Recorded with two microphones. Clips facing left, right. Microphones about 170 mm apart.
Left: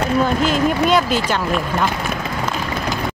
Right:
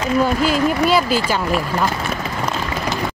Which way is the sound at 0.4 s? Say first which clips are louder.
Even; 5° right (ahead or behind).